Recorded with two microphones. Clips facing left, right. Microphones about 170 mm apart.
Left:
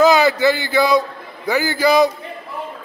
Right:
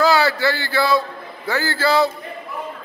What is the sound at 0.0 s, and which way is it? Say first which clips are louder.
A man's voice: left 4 dB; 20° left (ahead or behind).